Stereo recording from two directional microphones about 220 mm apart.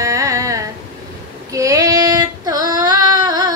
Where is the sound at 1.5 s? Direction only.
15° right (ahead or behind).